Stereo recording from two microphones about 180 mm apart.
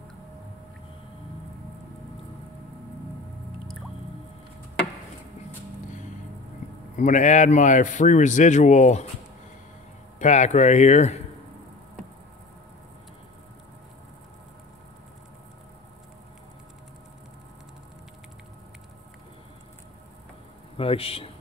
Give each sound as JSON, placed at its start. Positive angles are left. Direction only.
{"t": 7.0, "sound": "a man's voice", "side_deg": 45}
{"t": 10.1, "sound": "speech", "side_deg": 40}
{"t": 20.7, "sound": "a man's voice", "side_deg": 30}